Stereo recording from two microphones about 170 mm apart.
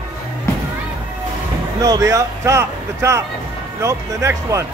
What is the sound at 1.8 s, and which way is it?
A man's voice, 20° right (ahead or behind).